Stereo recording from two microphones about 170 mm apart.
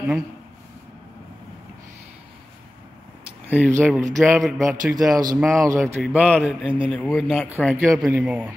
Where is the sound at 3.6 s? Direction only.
10° right (ahead or behind).